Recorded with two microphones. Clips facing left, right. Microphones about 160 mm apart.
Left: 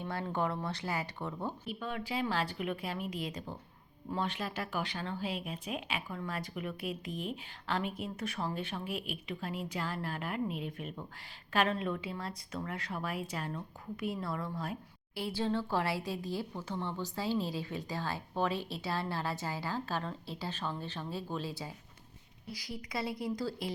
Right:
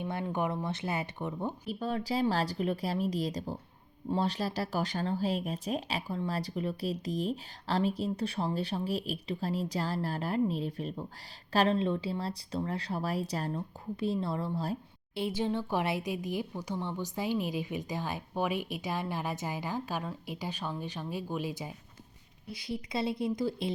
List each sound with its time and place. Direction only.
0.0 s speech: 20° right (ahead or behind)
1.6 s speech: 40° right (ahead or behind)
15.2 s speech: 20° right (ahead or behind)